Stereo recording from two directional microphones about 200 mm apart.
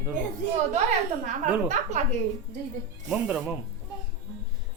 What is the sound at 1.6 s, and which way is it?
Speech, 35° right (ahead or behind).